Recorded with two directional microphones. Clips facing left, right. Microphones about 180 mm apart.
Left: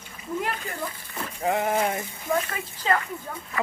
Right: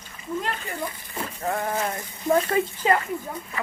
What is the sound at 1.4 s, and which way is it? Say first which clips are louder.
Speech: left 3 dB; 20° left (ahead or behind).